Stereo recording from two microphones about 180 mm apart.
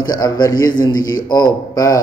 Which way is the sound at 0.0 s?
20° left (ahead or behind).